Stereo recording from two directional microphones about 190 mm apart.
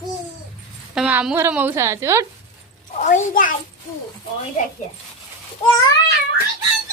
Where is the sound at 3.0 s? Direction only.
40° left (ahead or behind).